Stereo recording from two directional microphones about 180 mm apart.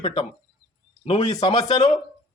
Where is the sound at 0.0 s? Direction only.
30° left (ahead or behind).